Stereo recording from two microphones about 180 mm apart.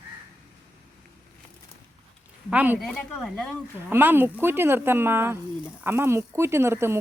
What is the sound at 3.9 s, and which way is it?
Speech, 10° right (ahead or behind).